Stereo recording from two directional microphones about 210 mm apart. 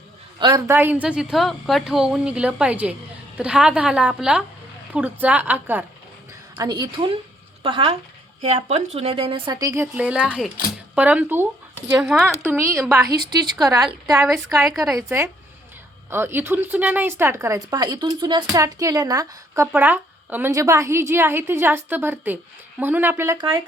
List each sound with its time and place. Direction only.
0.3 s a woman's voice: 20° right (ahead or behind)
0.7 s a woman's voice: 10° right (ahead or behind)
6.6 s a woman's voice: 20° right (ahead or behind)
14.3 s a woman's voice: centre (ahead or behind)
16.0 s a woman's voice: 10° right (ahead or behind)